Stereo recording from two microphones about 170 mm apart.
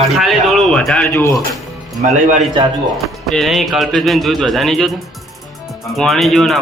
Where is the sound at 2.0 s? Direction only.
45° right (ahead or behind).